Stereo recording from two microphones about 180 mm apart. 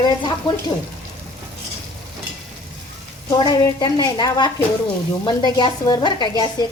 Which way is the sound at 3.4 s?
25° left (ahead or behind).